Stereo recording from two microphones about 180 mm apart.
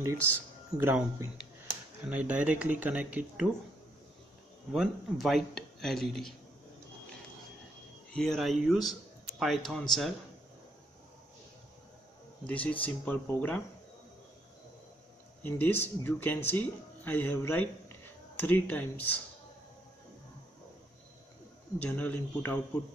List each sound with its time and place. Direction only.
0.0 s speech: 15° right (ahead or behind)
4.7 s speech: centre (ahead or behind)
8.1 s speech: centre (ahead or behind)
12.4 s a man's voice: 5° left (ahead or behind)
15.4 s speech: 10° left (ahead or behind)
21.7 s a man's voice: 10° left (ahead or behind)